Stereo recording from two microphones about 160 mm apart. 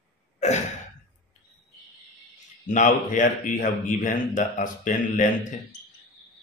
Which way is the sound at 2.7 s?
50° left (ahead or behind).